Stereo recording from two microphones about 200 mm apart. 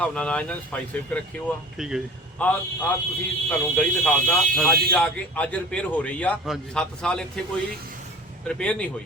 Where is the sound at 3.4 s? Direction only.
5° left (ahead or behind).